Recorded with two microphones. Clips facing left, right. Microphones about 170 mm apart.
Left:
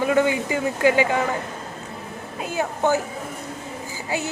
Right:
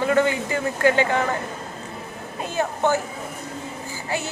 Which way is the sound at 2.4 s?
10° left (ahead or behind).